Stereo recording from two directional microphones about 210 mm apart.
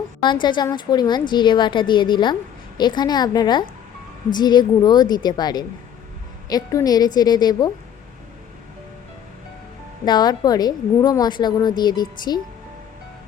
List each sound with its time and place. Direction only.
0.2 s a woman's voice: 20° left (ahead or behind)
10.1 s a woman's voice: 20° left (ahead or behind)